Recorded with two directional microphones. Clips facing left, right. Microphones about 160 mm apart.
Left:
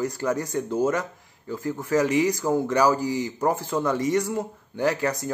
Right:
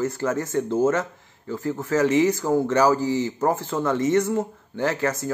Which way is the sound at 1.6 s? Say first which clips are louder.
Right 1 dB; 15° left (ahead or behind).